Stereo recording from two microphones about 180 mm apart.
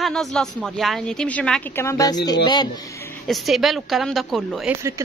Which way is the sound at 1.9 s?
20° left (ahead or behind).